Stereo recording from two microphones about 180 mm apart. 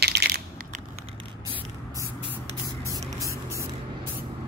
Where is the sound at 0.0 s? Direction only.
65° right (ahead or behind).